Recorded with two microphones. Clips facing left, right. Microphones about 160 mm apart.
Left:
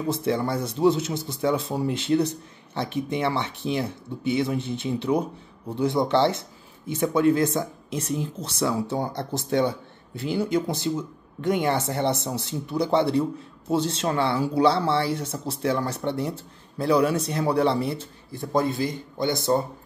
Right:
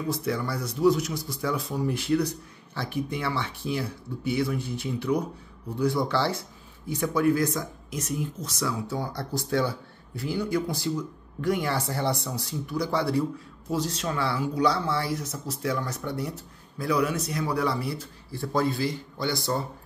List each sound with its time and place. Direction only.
0.1 s speech: 25° left (ahead or behind)